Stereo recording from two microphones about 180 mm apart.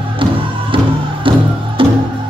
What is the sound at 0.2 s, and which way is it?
Music, 30° right (ahead or behind).